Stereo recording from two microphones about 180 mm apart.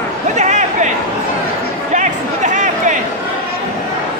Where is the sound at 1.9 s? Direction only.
40° right (ahead or behind).